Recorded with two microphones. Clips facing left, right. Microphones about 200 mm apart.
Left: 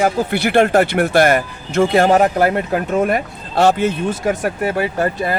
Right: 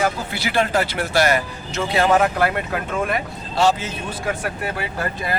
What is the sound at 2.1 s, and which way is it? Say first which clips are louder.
Speech: left 4 dB; 40° left (ahead or behind).